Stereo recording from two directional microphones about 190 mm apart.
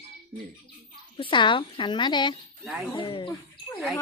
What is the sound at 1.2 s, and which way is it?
A woman's voice, 25° left (ahead or behind).